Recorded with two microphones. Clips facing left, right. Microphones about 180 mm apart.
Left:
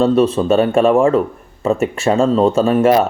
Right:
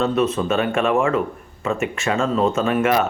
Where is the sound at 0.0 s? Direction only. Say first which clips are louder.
Left 6 dB; 30° left (ahead or behind).